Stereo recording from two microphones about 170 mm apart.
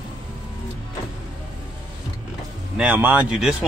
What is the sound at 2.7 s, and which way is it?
Speech, 10° right (ahead or behind).